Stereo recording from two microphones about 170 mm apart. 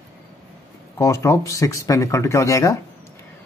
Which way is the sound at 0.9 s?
15° left (ahead or behind).